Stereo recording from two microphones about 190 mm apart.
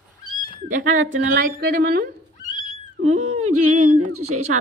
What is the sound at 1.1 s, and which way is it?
Speech, 55° right (ahead or behind).